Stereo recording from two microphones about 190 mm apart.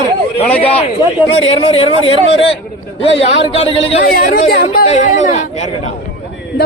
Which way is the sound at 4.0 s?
50° left (ahead or behind).